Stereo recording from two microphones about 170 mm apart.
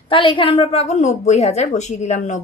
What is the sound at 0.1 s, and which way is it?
A woman's voice, 30° left (ahead or behind).